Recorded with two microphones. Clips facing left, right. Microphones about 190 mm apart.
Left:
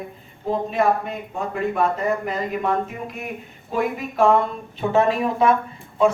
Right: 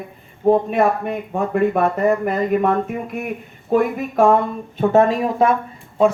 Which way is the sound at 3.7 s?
45° right (ahead or behind).